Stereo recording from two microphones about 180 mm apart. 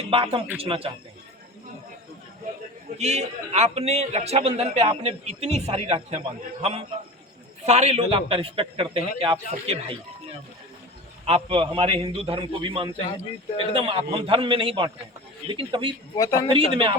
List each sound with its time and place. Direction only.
0.1 s a man's voice: 30° right (ahead or behind)
3.0 s a man's voice: 35° right (ahead or behind)
11.3 s a man's voice: 30° right (ahead or behind)
16.1 s a man's voice: 20° left (ahead or behind)
16.5 s speech: 30° right (ahead or behind)